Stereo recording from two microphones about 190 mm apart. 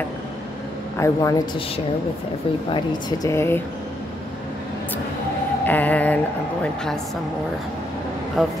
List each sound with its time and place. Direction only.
0.9 s speech: 15° left (ahead or behind)
2.7 s speech: 15° left (ahead or behind)
5.7 s a woman's voice: 10° left (ahead or behind)
8.4 s a woman's voice: centre (ahead or behind)